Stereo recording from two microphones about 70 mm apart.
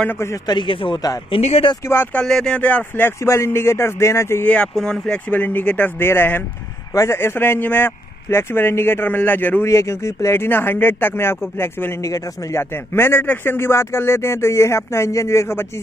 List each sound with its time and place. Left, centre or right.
0.5 s a man's voice: left
1.8 s speech: left
2.2 s speech: centre
2.6 s speech: left
3.3 s speech: left
4.7 s speech: centre
5.3 s speech: left
6.9 s speech: left
9.7 s speech: left